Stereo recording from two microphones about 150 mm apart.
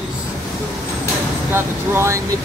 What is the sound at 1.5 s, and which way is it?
Speech, 15° right (ahead or behind).